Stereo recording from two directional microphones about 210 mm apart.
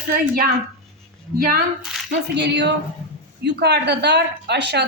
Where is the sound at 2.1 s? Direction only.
55° right (ahead or behind).